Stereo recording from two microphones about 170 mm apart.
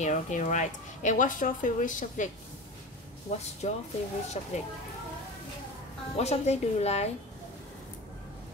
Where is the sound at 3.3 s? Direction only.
40° left (ahead or behind).